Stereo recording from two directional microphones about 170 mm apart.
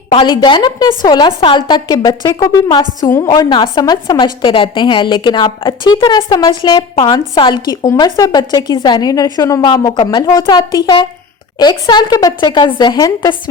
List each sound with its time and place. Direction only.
0.1 s a woman's voice: 25° left (ahead or behind)